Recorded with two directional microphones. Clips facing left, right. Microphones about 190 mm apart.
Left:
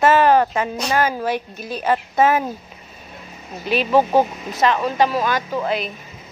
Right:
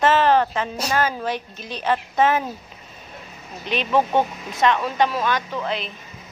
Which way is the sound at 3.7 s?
5° left (ahead or behind).